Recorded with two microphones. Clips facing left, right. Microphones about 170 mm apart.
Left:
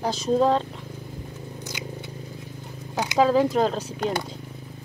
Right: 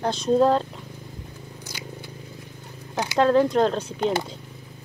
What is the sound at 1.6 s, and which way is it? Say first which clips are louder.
Biting: left 2 dB; 20° left (ahead or behind).